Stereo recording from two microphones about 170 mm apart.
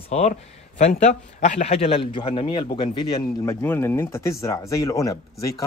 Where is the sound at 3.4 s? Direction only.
10° left (ahead or behind).